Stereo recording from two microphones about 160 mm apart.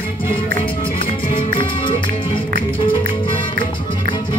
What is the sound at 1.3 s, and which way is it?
Music, 35° left (ahead or behind).